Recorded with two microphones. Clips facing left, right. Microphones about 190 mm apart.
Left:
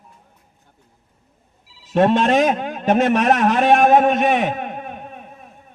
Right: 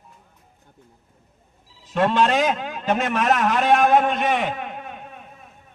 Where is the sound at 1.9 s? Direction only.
50° left (ahead or behind).